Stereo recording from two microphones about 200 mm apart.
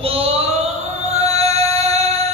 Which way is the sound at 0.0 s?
30° right (ahead or behind).